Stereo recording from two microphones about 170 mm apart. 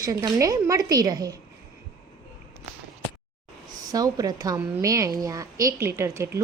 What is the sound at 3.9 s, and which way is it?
A woman's voice, 20° right (ahead or behind).